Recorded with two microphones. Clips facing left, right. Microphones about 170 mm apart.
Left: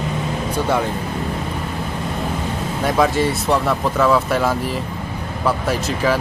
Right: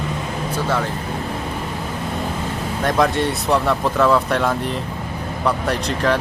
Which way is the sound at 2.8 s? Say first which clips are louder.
Left 1 dB; 5° left (ahead or behind).